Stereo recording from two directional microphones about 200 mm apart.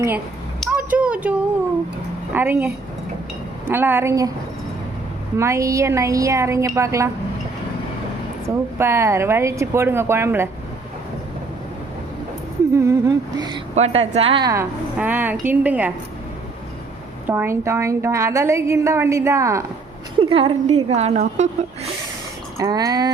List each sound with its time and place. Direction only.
0.6 s a sound: 5° right (ahead or behind)
2.3 s a woman's voice: 10° right (ahead or behind)
5.4 s a woman's voice: 15° right (ahead or behind)
8.4 s a woman's voice: 15° right (ahead or behind)
12.7 s a woman's voice: 15° right (ahead or behind)
13.7 s a woman's voice: 30° right (ahead or behind)
14.5 s a woman's voice: 10° right (ahead or behind)
17.2 s a woman's voice: 10° right (ahead or behind)
20.3 s a woman's voice: 30° right (ahead or behind)
22.5 s speech: 15° right (ahead or behind)